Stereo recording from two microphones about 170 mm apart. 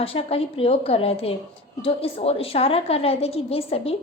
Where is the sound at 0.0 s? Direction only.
35° left (ahead or behind).